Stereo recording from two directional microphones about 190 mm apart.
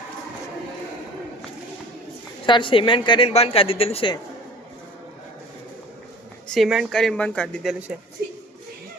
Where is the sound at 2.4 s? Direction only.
25° left (ahead or behind).